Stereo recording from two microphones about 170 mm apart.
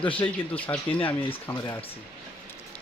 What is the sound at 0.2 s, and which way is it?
Speech, 10° left (ahead or behind).